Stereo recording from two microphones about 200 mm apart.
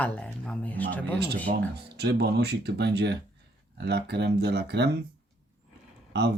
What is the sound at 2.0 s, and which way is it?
Speech, 55° right (ahead or behind).